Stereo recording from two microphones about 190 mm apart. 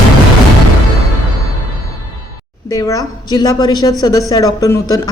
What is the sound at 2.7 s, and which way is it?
A woman's voice, 20° left (ahead or behind).